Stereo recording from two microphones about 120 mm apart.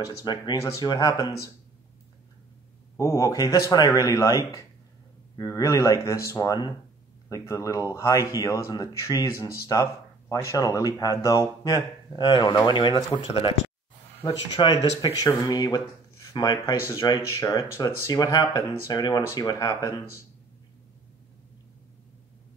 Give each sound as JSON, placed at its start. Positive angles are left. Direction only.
{"t": 0.2, "sound": "speech", "side_deg": 35}
{"t": 3.0, "sound": "speech", "side_deg": 25}
{"t": 12.3, "sound": "speech", "side_deg": 40}
{"t": 14.2, "sound": "speech", "side_deg": 35}